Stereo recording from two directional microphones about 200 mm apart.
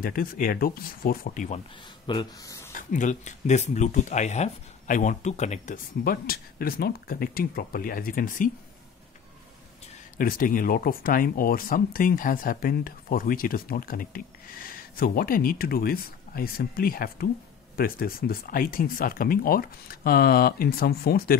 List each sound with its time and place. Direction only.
0.0 s speech: 45° left (ahead or behind)
2.0 s speech: 20° left (ahead or behind)
2.7 s speech: 40° left (ahead or behind)
10.1 s speech: 45° left (ahead or behind)